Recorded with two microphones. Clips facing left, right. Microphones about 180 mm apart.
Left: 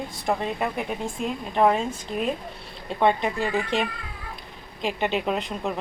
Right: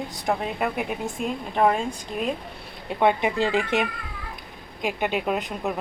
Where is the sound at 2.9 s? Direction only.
10° right (ahead or behind).